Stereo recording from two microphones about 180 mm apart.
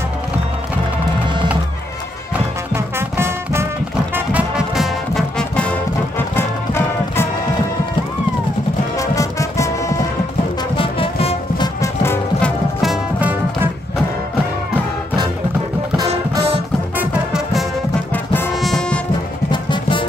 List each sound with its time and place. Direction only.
2.7 s music: 15° right (ahead or behind); by 7.2 s 10° left (ahead or behind)
8.9 s music: 20° left (ahead or behind)
10.8 s music: 30° left (ahead or behind); by 14.0 s 10° right (ahead or behind)
16.9 s music: 10° right (ahead or behind)
18.1 s brass instrument: 10° left (ahead or behind)
18.5 s brass instrument: centre (ahead or behind)
19.5 s music: 25° left (ahead or behind)